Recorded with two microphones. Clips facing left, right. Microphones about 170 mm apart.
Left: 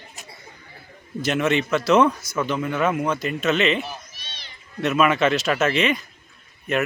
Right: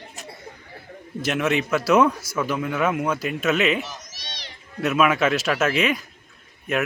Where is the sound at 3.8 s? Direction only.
85° right.